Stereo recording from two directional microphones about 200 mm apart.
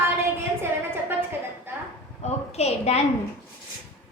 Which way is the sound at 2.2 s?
30° left (ahead or behind).